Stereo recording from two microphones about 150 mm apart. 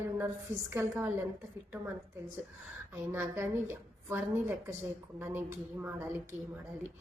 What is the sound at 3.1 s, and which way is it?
A woman's voice, 15° right (ahead or behind).